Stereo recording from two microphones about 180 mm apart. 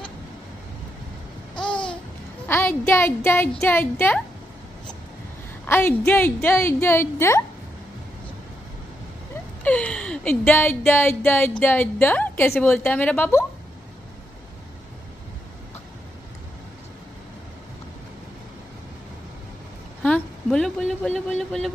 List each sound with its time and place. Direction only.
1.5 s babbling: 25° left (ahead or behind)
2.4 s a woman's voice: 10° left (ahead or behind)
5.7 s a woman's voice: 10° left (ahead or behind)
9.6 s a woman's voice: 10° left (ahead or behind)
20.0 s a sound: 5° left (ahead or behind)